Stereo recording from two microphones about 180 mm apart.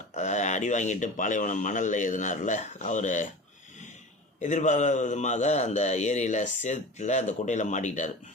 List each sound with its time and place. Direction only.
0.1 s speech: 40° left (ahead or behind)
4.4 s a man's voice: 40° left (ahead or behind)